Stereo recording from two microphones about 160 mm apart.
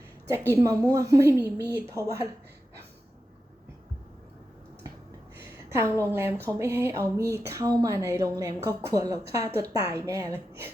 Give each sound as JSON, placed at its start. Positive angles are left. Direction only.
{"t": 0.3, "sound": "a woman's voice", "side_deg": -20}
{"t": 5.7, "sound": "a woman's voice", "side_deg": -15}